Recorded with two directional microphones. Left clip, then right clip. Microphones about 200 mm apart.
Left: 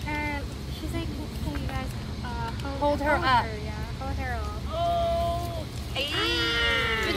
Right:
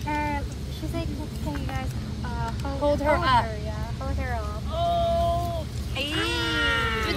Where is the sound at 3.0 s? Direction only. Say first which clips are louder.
Right 1 dB; 5° left (ahead or behind).